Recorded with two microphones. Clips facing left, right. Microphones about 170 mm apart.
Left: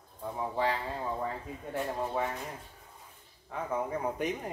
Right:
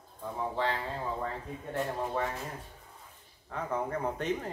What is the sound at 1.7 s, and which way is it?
Speech, centre (ahead or behind).